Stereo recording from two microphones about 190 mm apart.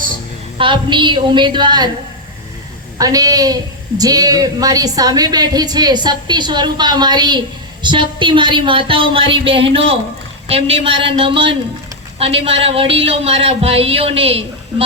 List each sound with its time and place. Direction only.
0.6 s a woman's voice: 25° right (ahead or behind)
3.0 s a woman's voice: 20° right (ahead or behind)